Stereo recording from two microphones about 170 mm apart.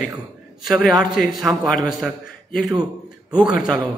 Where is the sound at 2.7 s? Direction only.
25° right (ahead or behind).